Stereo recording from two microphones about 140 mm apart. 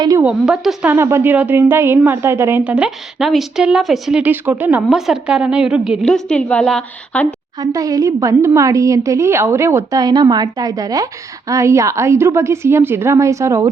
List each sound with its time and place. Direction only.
0.2 s a woman's voice: 5° right (ahead or behind)
0.9 s a woman's voice: 20° right (ahead or behind); by 7.3 s 5° left (ahead or behind)
7.3 s a woman's voice: 25° right (ahead or behind)